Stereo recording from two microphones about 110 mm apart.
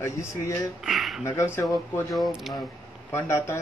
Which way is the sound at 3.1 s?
20° left (ahead or behind).